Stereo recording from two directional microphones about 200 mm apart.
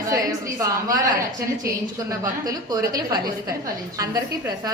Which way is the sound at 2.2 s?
15° right (ahead or behind).